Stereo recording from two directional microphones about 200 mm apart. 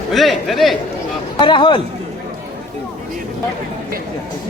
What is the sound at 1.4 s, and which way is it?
Chatter, 25° left (ahead or behind).